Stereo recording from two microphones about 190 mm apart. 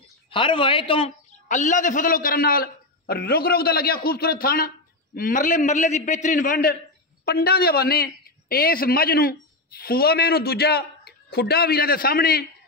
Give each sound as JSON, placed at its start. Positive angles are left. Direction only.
{"t": 0.3, "sound": "a man's voice", "side_deg": 25}